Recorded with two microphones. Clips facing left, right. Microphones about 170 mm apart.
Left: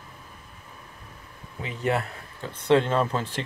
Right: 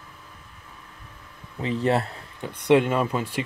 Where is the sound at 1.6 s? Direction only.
35° right (ahead or behind).